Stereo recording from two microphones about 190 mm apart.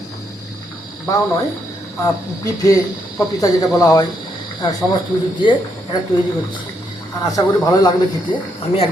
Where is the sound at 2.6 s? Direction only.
15° left (ahead or behind).